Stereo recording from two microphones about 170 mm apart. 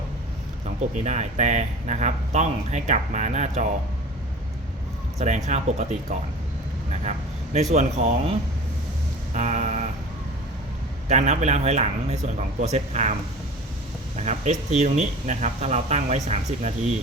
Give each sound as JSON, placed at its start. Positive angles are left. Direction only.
{"t": 0.9, "sound": "speech", "side_deg": -45}
{"t": 5.1, "sound": "speech", "side_deg": -40}
{"t": 7.0, "sound": "a sound", "side_deg": -40}
{"t": 7.7, "sound": "speech", "side_deg": -40}
{"t": 9.3, "sound": "a sound", "side_deg": -40}
{"t": 11.1, "sound": "speech", "side_deg": -45}
{"t": 14.2, "sound": "speech", "side_deg": -40}